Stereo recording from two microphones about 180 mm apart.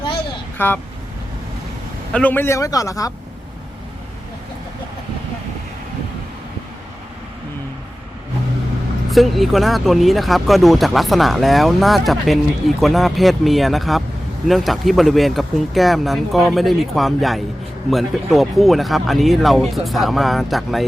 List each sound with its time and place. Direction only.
0.6 s a man's voice: 10° left (ahead or behind)
2.1 s a man's voice: 10° left (ahead or behind)
9.0 s speech: centre (ahead or behind)